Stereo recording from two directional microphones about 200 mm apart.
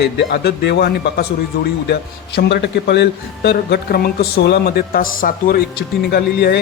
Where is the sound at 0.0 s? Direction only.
55° left (ahead or behind).